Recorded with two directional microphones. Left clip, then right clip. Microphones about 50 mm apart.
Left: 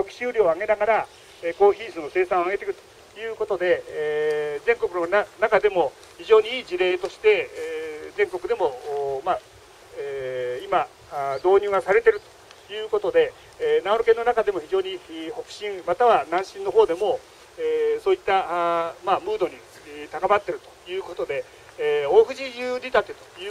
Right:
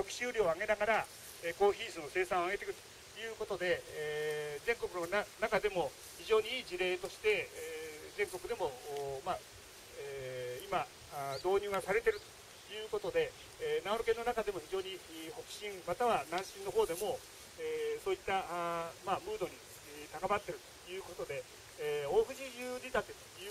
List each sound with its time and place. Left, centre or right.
0.1 s speech: right; by 23.5 s centre